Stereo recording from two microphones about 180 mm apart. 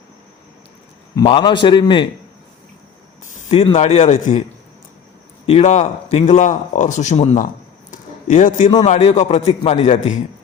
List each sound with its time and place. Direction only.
1.1 s a man's voice: 25° left (ahead or behind)
3.3 s speech: 35° left (ahead or behind)
5.5 s a man's voice: 35° left (ahead or behind)